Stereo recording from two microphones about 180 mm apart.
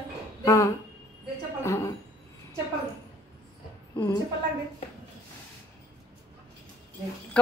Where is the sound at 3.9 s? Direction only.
20° left (ahead or behind).